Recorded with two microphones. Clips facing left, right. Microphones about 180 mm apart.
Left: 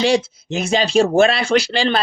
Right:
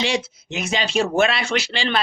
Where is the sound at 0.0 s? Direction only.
35° left (ahead or behind).